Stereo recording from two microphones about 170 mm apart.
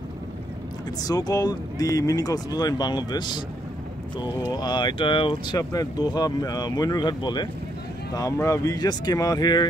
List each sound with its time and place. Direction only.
1.0 s speech: 20° left (ahead or behind)
4.5 s speech: 25° left (ahead or behind)